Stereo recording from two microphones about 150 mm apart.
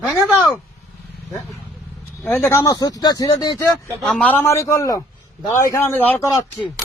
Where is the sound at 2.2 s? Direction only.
15° left (ahead or behind).